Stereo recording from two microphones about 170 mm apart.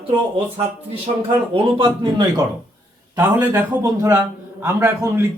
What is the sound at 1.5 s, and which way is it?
Speech, 30° right (ahead or behind).